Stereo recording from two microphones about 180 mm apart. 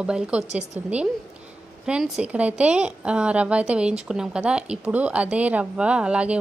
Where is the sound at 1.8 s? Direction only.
5° right (ahead or behind).